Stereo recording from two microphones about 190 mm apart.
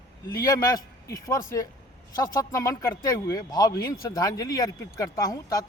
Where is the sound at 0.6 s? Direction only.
20° left (ahead or behind).